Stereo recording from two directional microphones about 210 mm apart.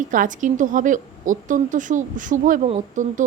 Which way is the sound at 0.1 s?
40° right (ahead or behind).